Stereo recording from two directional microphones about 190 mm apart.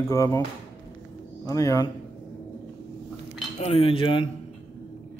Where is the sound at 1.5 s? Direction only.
20° left (ahead or behind).